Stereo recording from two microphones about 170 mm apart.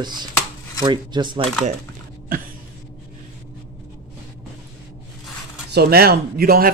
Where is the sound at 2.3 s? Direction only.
55° right (ahead or behind).